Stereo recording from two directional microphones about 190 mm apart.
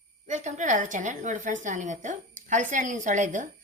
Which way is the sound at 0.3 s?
40° right (ahead or behind).